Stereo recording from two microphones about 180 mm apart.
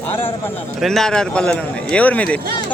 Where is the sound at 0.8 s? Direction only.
Centre (ahead or behind).